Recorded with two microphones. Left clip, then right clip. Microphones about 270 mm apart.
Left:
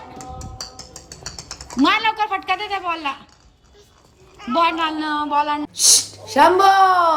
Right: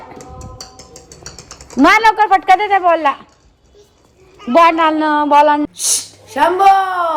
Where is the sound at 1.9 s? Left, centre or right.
Centre.